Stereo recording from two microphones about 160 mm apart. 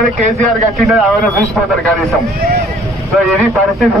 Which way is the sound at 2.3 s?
75° right (ahead or behind).